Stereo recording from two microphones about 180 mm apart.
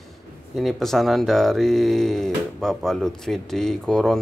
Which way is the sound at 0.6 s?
Centre (ahead or behind).